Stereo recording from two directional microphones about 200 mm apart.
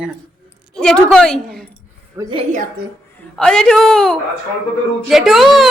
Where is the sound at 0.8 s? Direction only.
5° left (ahead or behind).